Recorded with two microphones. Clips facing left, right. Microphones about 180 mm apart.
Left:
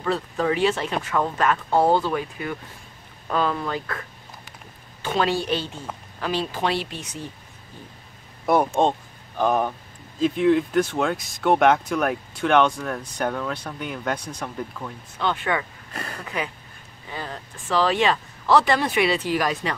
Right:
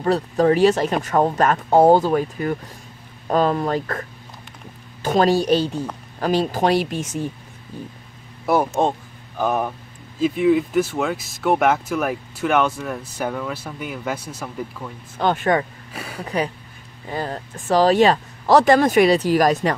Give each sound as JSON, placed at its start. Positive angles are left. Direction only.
{"t": 0.0, "sound": "speech", "side_deg": -40}
{"t": 5.0, "sound": "speech", "side_deg": -40}
{"t": 8.5, "sound": "speech", "side_deg": -5}
{"t": 15.1, "sound": "speech", "side_deg": -45}
{"t": 15.9, "sound": "speech", "side_deg": -10}
{"t": 17.1, "sound": "speech", "side_deg": -45}